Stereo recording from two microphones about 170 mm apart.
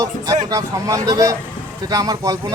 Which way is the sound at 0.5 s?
20° right (ahead or behind).